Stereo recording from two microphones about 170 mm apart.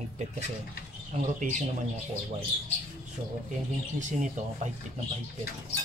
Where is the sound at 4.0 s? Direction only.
45° right (ahead or behind).